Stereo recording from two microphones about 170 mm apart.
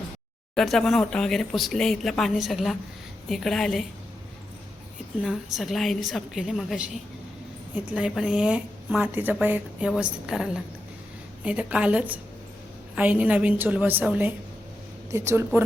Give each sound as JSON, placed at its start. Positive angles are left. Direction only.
{"t": 0.5, "sound": "a woman's voice", "side_deg": 0}
{"t": 5.2, "sound": "a woman's voice", "side_deg": 0}